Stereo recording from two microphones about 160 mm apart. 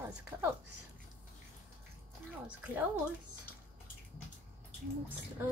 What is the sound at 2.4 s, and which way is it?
Speech, 10° right (ahead or behind).